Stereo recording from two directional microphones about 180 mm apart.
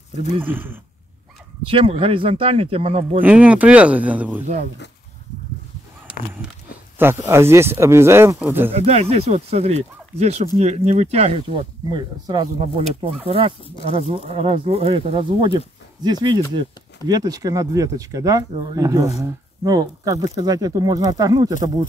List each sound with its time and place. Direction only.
0.4 s speech: 10° right (ahead or behind)
1.7 s speech: 30° right (ahead or behind)
3.2 s speech: 10° right (ahead or behind)
7.0 s speech: 15° right (ahead or behind)
8.7 s speech: 35° right (ahead or behind); by 18.4 s 20° right (ahead or behind)
18.5 s speech: 30° right (ahead or behind)
18.8 s speech: 20° right (ahead or behind)